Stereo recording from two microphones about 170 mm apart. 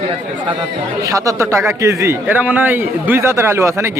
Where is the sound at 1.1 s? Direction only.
20° right (ahead or behind).